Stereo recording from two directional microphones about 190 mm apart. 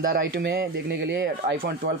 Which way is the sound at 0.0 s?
60° right (ahead or behind).